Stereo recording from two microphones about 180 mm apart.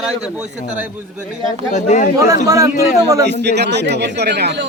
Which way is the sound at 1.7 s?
40° left (ahead or behind).